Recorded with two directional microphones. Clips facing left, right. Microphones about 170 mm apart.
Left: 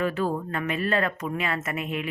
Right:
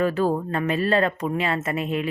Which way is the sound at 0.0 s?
40° right (ahead or behind).